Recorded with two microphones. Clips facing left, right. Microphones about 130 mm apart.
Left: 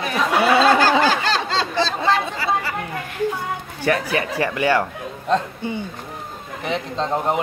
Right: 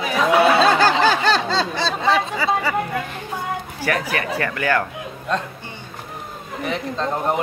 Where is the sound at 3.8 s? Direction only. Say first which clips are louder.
Left 3 dB; 25° left (ahead or behind).